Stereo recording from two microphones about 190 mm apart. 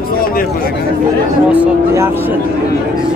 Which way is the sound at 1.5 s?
15° right (ahead or behind).